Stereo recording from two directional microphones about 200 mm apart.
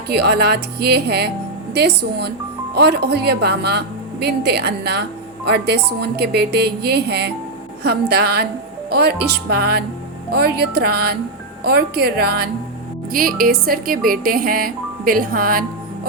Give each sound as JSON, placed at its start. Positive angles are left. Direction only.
{"t": 0.1, "sound": "speech", "side_deg": -55}